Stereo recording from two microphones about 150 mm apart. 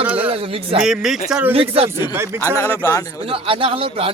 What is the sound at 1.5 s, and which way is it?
Speech, 40° right (ahead or behind).